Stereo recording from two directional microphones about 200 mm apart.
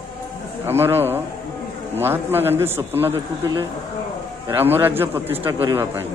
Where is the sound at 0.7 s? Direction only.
10° right (ahead or behind).